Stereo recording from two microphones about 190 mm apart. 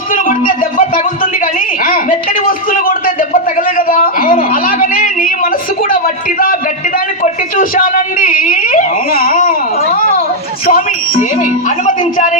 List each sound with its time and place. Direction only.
0.1 s speech: 45° left (ahead or behind)
3.8 s a sound: 50° left (ahead or behind)
7.2 s speech: 45° left (ahead or behind)